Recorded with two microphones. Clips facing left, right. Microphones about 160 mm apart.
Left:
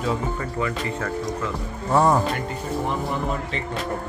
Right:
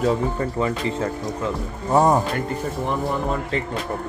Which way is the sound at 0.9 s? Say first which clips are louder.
Right 2 dB; 25° right (ahead or behind).